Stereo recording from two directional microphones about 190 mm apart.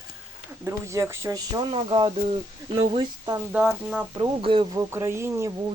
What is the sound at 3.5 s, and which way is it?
Speech, 5° right (ahead or behind).